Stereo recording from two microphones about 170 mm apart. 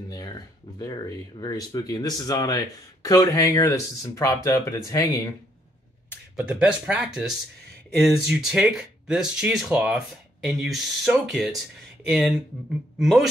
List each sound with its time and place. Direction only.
0.1 s speech: 20° left (ahead or behind)
6.3 s speech: 5° right (ahead or behind)
13.0 s speech: centre (ahead or behind)